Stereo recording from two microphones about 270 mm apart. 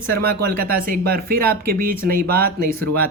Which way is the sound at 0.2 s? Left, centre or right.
Right.